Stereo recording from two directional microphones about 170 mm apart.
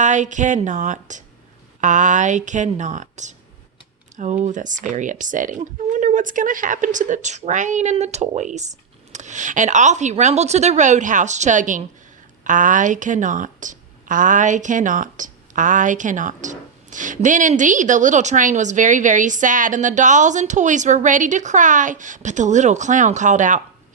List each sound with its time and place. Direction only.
0.0 s a woman's voice: 45° right (ahead or behind)